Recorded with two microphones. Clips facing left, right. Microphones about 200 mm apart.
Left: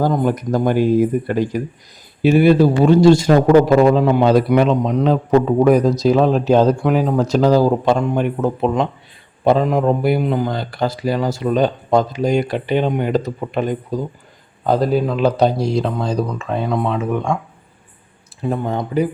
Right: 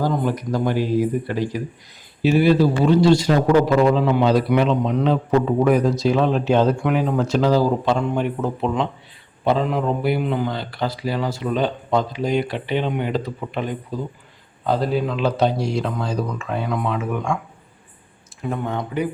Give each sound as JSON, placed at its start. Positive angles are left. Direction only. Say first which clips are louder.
{"t": 0.0, "sound": "a man's voice", "louder": "left 4 dB", "side_deg": 50}
{"t": 18.4, "sound": "speech", "louder": "left 4 dB", "side_deg": 35}